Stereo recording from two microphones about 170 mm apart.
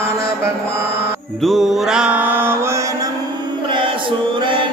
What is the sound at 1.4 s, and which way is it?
Mantra, centre (ahead or behind).